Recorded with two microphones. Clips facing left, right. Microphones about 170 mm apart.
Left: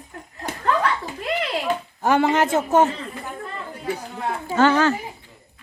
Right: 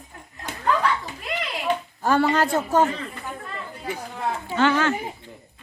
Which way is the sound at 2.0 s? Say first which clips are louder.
Left 2 dB; 20° left (ahead or behind).